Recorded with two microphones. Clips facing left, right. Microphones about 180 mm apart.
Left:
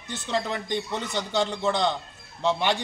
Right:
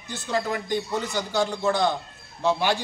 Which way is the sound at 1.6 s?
20° left (ahead or behind).